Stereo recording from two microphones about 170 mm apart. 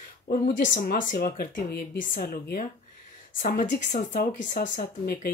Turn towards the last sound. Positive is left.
turn(degrees=55)  # may be behind; listen again after turning